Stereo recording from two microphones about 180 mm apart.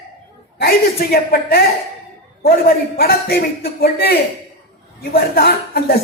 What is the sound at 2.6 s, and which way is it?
A woman's voice, 55° left (ahead or behind).